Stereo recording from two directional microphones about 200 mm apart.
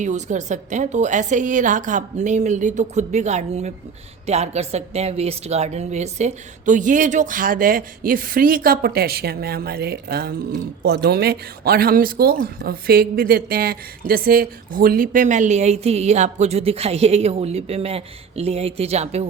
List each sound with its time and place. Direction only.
0.0 s a woman's voice: 35° right (ahead or behind)